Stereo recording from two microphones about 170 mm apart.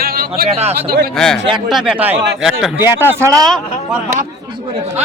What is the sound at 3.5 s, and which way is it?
Speech, centre (ahead or behind).